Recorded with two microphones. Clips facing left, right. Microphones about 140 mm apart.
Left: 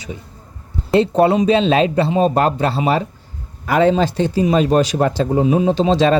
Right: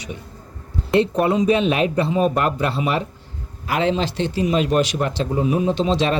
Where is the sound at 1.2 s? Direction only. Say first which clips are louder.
Left 3 dB; 85° left.